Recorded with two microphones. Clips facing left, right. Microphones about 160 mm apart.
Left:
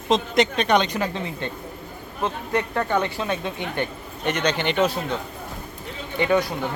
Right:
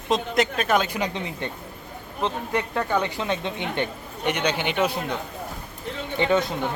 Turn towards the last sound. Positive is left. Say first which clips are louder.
# left 1 dB
turn(degrees=-20)  # may be behind; listen again after turning